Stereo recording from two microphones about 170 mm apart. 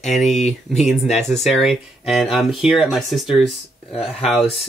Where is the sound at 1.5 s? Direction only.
Centre (ahead or behind).